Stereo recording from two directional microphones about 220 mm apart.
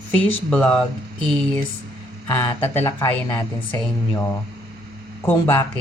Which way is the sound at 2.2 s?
10° left (ahead or behind).